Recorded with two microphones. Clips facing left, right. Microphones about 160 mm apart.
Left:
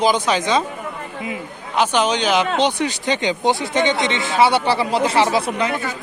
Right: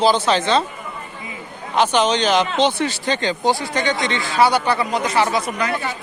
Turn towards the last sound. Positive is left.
turn(degrees=25)  # may be behind; listen again after turning